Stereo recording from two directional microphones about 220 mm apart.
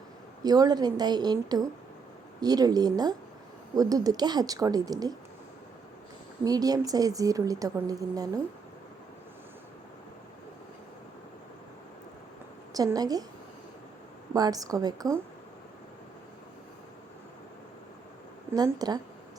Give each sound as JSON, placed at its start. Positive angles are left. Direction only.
{"t": 0.4, "sound": "a woman's voice", "side_deg": -15}
{"t": 6.4, "sound": "a woman's voice", "side_deg": -15}
{"t": 12.7, "sound": "a woman's voice", "side_deg": -15}
{"t": 14.3, "sound": "a woman's voice", "side_deg": -15}
{"t": 18.5, "sound": "a woman's voice", "side_deg": -20}